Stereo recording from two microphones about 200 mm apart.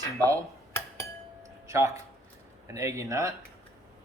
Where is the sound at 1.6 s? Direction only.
15° right (ahead or behind).